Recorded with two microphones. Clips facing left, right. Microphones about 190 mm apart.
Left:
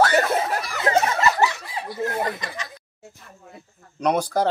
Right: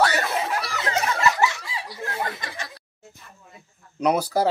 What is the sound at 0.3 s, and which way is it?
Snicker, 50° left (ahead or behind).